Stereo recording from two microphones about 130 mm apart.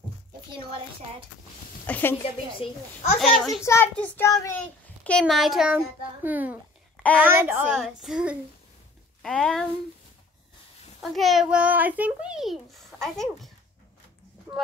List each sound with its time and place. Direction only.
1.9 s child singing: 15° left (ahead or behind)
2.2 s speech: 45° left (ahead or behind)
3.2 s a child's voice: centre (ahead or behind)
3.6 s a child's voice: 20° left (ahead or behind)
3.9 s child singing: 10° left (ahead or behind)
4.3 s a child's voice: 25° left (ahead or behind)
4.6 s a sound: 10° left (ahead or behind)
5.3 s a child's voice: centre (ahead or behind)
7.7 s a child's voice: 5° right (ahead or behind)
11.0 s a child's voice: centre (ahead or behind)